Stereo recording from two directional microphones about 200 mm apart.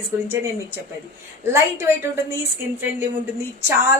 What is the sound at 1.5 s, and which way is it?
Speech, 10° right (ahead or behind).